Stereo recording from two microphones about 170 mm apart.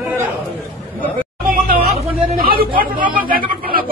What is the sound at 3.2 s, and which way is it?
Chatter, 60° right (ahead or behind).